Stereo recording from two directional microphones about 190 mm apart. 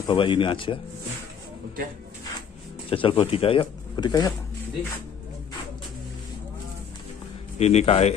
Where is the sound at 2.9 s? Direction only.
30° left (ahead or behind).